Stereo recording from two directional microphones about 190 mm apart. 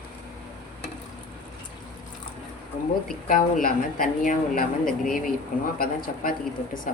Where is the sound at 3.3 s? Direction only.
45° left (ahead or behind).